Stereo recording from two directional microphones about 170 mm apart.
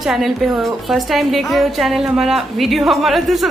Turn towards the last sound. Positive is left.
turn(degrees=0)  # may be behind; listen again after turning